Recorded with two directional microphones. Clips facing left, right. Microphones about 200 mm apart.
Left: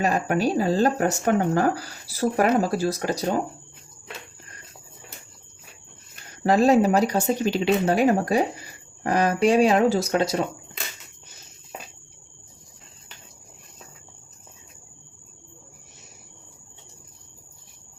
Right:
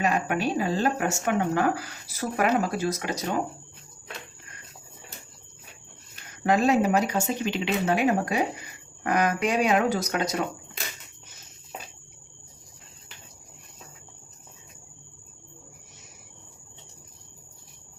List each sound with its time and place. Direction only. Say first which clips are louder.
0.0 s speech: left 3 dB; 35° left (ahead or behind)
6.4 s speech: left 4 dB; 35° left (ahead or behind)